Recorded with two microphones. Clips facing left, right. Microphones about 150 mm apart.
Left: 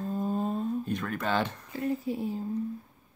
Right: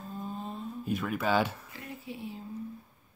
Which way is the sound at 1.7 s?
40° left (ahead or behind).